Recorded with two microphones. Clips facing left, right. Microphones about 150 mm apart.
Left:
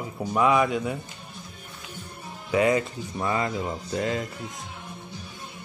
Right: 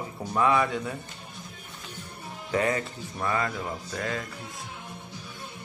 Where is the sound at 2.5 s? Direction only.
15° left (ahead or behind).